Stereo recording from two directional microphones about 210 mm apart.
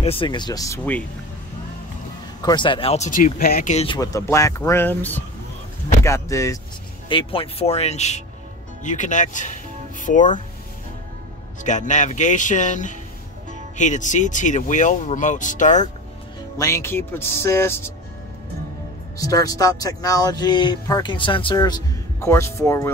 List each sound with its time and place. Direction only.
0.0 s speech: 25° left (ahead or behind)
2.4 s speech: 20° left (ahead or behind); by 3.7 s 45° left (ahead or behind)
3.7 s speech: 25° left (ahead or behind)
7.1 s speech: 25° left (ahead or behind)
11.6 s speech: 35° left (ahead or behind)
16.5 s speech: 15° left (ahead or behind)
19.1 s speech: 15° left (ahead or behind)